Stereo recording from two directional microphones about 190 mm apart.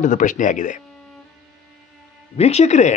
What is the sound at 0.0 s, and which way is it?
Speech, 40° left (ahead or behind).